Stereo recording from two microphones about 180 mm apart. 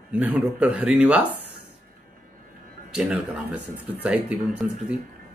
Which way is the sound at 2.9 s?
5° right (ahead or behind).